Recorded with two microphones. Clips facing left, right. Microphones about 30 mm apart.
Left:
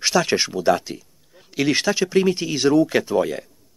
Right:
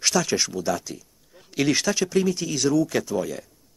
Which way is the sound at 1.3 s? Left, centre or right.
Centre.